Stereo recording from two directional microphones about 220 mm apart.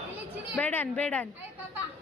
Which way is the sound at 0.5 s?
5° left (ahead or behind).